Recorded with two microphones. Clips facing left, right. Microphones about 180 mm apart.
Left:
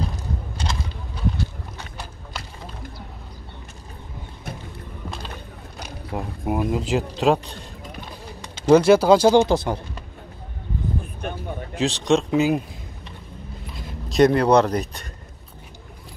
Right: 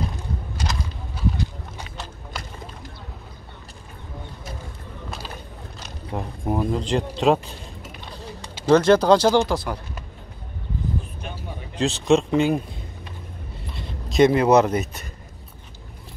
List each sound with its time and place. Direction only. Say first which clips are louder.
5.8 s speech: left 1 dB; 5° left (ahead or behind)
7.4 s a sound: left 1 dB; 5° right (ahead or behind)
8.6 s speech: left 2 dB; 10° left (ahead or behind)
9.5 s speech: left 4 dB; 25° left (ahead or behind)
11.7 s speech: right 1 dB; centre (ahead or behind)
13.7 s speech: even; centre (ahead or behind)